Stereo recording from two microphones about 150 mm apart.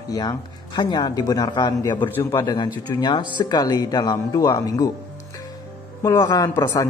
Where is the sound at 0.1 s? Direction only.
25° left (ahead or behind).